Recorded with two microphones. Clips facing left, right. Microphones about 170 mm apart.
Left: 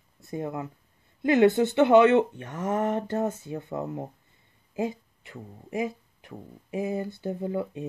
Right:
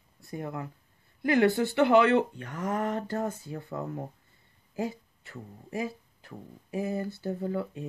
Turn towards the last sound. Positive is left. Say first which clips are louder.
# left 2 dB
turn(degrees=20)  # may be behind; listen again after turning